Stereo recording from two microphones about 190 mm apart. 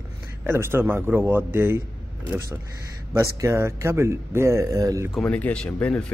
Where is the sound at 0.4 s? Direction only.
10° right (ahead or behind).